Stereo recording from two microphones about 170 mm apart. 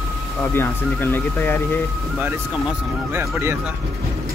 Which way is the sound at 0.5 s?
15° left (ahead or behind).